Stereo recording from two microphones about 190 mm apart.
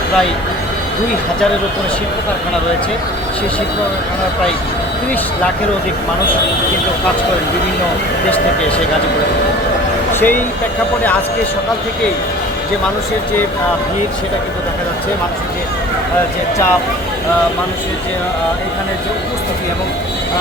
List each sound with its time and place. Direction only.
10.2 s speech: 10° left (ahead or behind)